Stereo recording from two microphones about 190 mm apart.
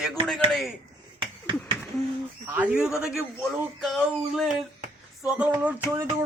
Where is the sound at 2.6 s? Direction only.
5° right (ahead or behind).